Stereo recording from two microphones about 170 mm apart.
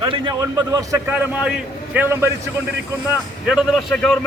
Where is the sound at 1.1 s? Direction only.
10° right (ahead or behind).